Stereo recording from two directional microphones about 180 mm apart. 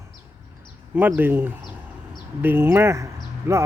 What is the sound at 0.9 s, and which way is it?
Speech, 10° right (ahead or behind).